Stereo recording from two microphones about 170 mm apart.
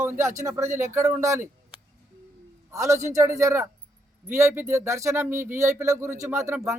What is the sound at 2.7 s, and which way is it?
Speech, 20° right (ahead or behind).